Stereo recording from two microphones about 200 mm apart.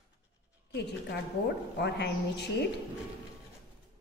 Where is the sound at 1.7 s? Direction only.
55° left (ahead or behind).